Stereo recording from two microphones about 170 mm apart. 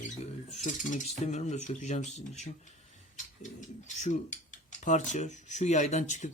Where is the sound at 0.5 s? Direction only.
45° left (ahead or behind).